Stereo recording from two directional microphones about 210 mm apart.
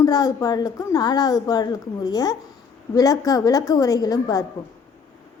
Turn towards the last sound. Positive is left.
turn(degrees=15)  # may be behind; listen again after turning